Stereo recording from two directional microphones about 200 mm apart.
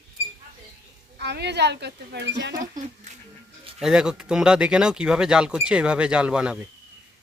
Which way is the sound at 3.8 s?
5° right (ahead or behind).